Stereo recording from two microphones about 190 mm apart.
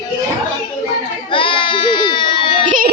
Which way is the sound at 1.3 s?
25° left (ahead or behind).